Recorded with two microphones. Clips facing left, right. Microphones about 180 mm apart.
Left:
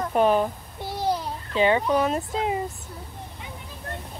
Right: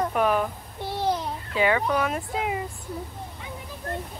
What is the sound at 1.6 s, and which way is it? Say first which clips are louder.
A woman's voice: left 2 dB; 25° left (ahead or behind).